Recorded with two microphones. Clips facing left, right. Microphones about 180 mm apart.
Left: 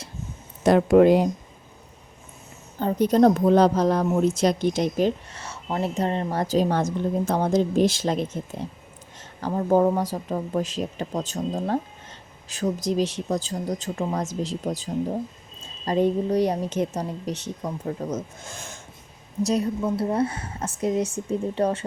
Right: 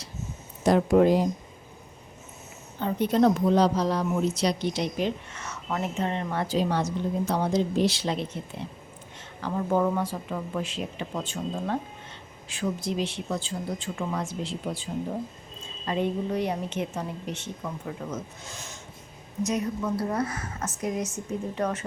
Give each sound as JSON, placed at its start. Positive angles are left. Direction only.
{"t": 0.6, "sound": "speech", "side_deg": 65}
{"t": 2.7, "sound": "a woman's voice", "side_deg": 40}
{"t": 15.9, "sound": "a woman's voice", "side_deg": 40}
{"t": 19.4, "sound": "a woman's voice", "side_deg": 35}